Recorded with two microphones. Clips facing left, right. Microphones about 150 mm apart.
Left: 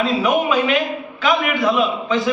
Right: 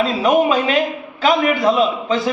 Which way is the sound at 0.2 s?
35° right (ahead or behind).